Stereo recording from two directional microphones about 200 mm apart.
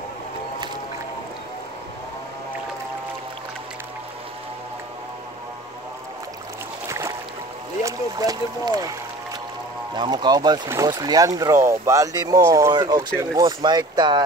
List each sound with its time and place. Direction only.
6.9 s boat: 15° right (ahead or behind)
7.8 s speech: 20° right (ahead or behind)
9.9 s speech: 20° right (ahead or behind)